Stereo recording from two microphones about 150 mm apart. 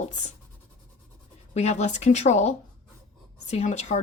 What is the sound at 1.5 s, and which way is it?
Speech, 50° left (ahead or behind).